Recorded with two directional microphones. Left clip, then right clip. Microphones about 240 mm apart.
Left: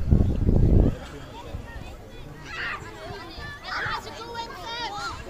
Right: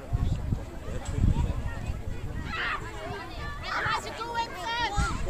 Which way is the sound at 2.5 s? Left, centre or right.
Left.